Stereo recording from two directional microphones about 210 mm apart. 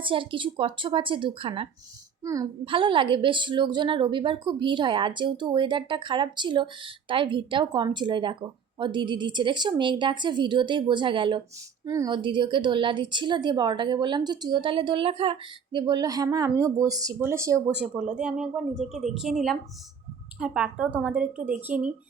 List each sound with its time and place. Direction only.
0.0 s a child's voice: 25° right (ahead or behind); by 21.9 s 5° right (ahead or behind)